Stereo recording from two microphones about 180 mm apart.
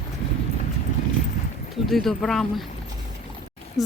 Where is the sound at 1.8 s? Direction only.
Centre (ahead or behind).